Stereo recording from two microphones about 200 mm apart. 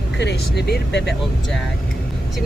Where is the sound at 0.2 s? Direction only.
55° left (ahead or behind).